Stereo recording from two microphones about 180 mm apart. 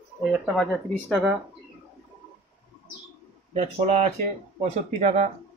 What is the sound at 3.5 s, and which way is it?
Speech, 35° right (ahead or behind).